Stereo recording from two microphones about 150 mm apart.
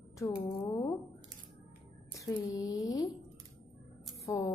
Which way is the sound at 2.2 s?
25° left (ahead or behind).